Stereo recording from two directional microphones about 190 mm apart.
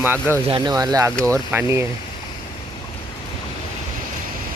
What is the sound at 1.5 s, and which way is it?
Speech, 10° right (ahead or behind).